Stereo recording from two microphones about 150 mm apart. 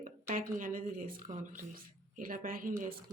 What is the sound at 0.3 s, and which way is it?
Speech, 65° right (ahead or behind).